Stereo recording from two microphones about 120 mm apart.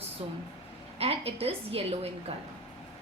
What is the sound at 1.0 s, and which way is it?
A woman's voice, 55° right (ahead or behind).